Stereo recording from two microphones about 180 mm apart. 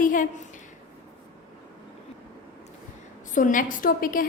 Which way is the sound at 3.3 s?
45° left (ahead or behind).